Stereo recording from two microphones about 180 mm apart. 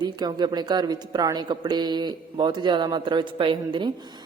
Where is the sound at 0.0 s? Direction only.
25° right (ahead or behind).